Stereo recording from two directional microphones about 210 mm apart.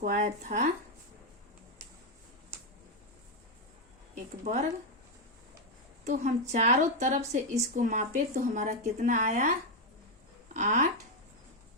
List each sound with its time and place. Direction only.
0.0 s speech: 35° right (ahead or behind)
4.1 s speech: 35° right (ahead or behind)
6.1 s speech: 35° right (ahead or behind)
10.5 s speech: 35° right (ahead or behind)